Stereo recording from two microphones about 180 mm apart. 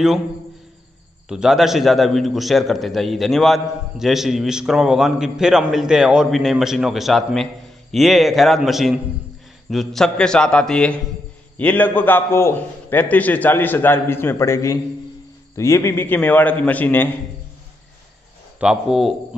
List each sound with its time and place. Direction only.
1.3 s a man's voice: 5° right (ahead or behind)
18.6 s a man's voice: 5° right (ahead or behind)